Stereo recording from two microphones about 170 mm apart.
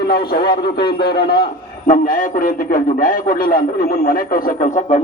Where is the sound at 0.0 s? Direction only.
70° left (ahead or behind).